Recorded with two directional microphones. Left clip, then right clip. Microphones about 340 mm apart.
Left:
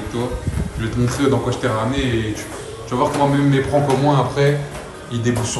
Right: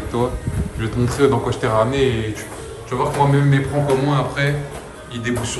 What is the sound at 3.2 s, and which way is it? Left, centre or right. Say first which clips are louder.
Speech: left 1 dB; centre.